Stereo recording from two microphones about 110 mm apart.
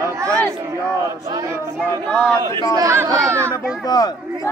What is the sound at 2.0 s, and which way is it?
Speech, 10° left (ahead or behind).